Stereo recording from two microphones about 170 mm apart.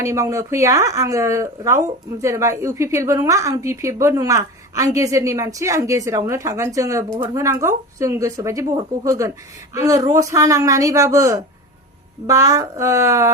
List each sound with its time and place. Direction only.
0.0 s speech: 15° right (ahead or behind)